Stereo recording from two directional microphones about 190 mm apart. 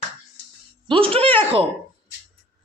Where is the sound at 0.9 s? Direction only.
30° right (ahead or behind).